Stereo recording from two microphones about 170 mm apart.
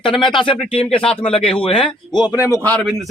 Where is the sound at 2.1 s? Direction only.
20° left (ahead or behind).